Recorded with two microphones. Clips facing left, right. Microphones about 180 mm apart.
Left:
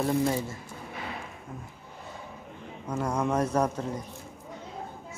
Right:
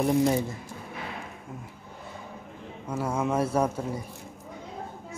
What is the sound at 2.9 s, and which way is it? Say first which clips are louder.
Speech: even; 5° right (ahead or behind).